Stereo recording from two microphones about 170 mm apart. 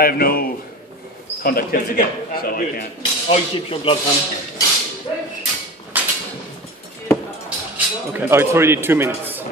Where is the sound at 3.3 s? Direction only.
35° left (ahead or behind).